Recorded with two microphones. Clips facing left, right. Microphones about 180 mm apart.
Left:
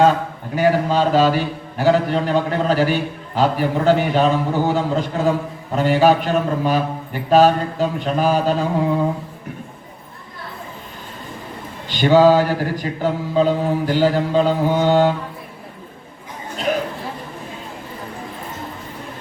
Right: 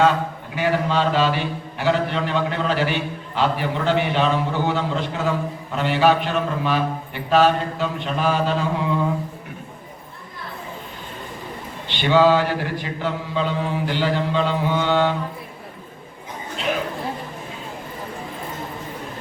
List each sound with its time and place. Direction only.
0.5 s a man's voice: 40° left (ahead or behind)
11.9 s a man's voice: 40° left (ahead or behind)